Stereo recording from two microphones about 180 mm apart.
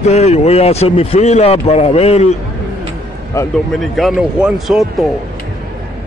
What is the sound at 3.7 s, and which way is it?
Speech, centre (ahead or behind).